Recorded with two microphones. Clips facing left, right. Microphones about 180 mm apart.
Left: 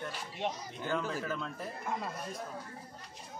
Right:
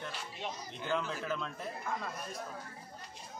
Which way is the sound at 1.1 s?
10° left (ahead or behind).